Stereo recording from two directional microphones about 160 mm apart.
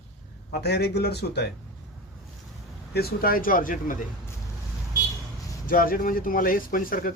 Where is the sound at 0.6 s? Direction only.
90° left.